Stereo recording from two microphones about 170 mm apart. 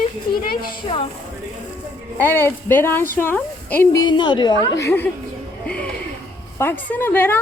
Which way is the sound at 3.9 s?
25° left (ahead or behind).